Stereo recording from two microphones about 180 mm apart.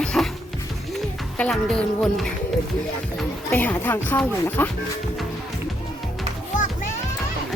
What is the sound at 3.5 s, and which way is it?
Speech, 10° left (ahead or behind).